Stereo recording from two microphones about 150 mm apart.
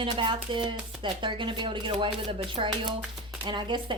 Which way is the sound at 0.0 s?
35° right (ahead or behind).